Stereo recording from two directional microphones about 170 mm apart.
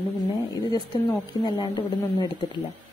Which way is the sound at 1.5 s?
25° left (ahead or behind).